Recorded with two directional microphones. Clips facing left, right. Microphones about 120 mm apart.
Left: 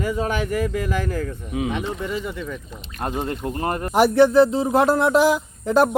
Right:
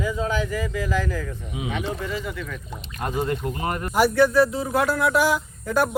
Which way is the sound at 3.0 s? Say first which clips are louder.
Even; 35° left (ahead or behind).